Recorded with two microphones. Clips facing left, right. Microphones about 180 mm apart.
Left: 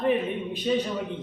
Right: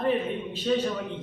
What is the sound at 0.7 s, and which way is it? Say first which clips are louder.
Speech: even; 10° left (ahead or behind).